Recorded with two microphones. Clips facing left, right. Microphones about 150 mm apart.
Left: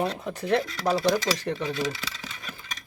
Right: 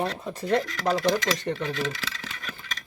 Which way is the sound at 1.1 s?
5° left (ahead or behind).